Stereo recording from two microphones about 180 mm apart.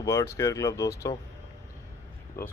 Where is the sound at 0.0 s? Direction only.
15° left (ahead or behind).